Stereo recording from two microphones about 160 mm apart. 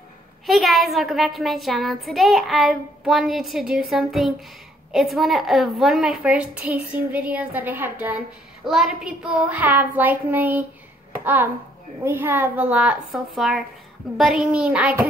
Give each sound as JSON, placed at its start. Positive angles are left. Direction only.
{"t": 0.5, "sound": "a woman's voice", "side_deg": 0}
{"t": 12.0, "sound": "a woman's voice", "side_deg": -15}